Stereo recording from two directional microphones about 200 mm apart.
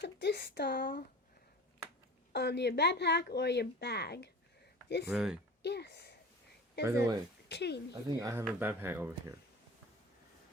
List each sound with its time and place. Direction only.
0.0 s a woman's voice: 60° left (ahead or behind)
2.3 s a woman's voice: 55° left (ahead or behind)
5.1 s speech: centre (ahead or behind)
5.6 s a woman's voice: 55° left (ahead or behind)
6.8 s speech: 15° right (ahead or behind)
7.4 s speech: 55° left (ahead or behind)
8.2 s speech: 15° right (ahead or behind)